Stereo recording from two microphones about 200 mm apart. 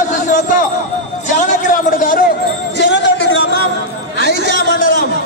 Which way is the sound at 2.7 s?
60° left (ahead or behind).